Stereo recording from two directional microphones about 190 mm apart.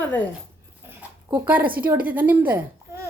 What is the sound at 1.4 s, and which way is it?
A woman's voice, 10° right (ahead or behind).